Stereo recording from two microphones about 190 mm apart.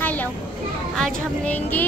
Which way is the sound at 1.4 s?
10° left (ahead or behind).